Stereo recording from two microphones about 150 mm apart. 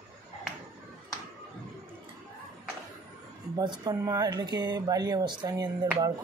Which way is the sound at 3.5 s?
25° right (ahead or behind).